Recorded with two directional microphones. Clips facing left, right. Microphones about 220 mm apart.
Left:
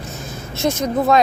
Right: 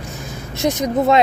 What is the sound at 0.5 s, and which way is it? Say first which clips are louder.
Speech: right 1 dB; 15° right (ahead or behind).